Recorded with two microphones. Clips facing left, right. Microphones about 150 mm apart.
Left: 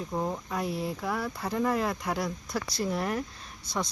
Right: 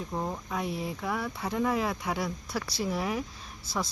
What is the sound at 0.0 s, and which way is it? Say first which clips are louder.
Speech: left 2 dB; 5° left (ahead or behind).